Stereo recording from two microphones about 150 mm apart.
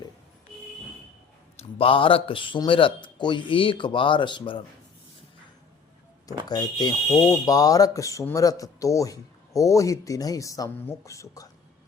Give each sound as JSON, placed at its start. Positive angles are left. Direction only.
{"t": 1.8, "sound": "speech", "side_deg": 35}
{"t": 6.2, "sound": "speech", "side_deg": 25}